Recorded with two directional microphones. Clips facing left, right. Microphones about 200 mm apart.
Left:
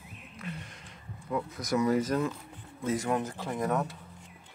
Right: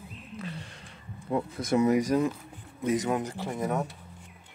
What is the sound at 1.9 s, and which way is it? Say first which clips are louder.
Speech: right 3 dB; 15° right (ahead or behind).